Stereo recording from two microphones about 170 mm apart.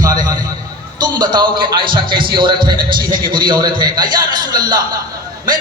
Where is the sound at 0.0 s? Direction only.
20° right (ahead or behind).